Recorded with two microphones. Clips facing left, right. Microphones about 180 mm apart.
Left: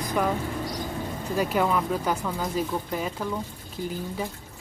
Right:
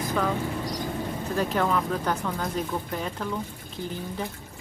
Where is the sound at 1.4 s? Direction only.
10° left (ahead or behind).